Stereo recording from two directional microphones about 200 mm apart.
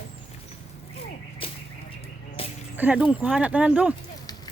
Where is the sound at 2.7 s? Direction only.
10° right (ahead or behind).